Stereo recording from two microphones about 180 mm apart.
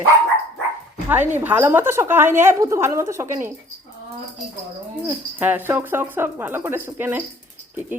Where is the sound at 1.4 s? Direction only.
10° right (ahead or behind).